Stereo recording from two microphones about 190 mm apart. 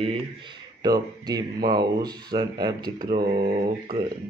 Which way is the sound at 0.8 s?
20° right (ahead or behind).